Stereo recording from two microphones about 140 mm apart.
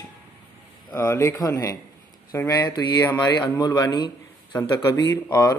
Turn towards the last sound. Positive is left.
turn(degrees=15)  # may be behind; listen again after turning